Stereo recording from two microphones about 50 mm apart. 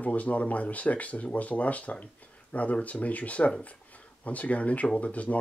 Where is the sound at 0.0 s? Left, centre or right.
Left.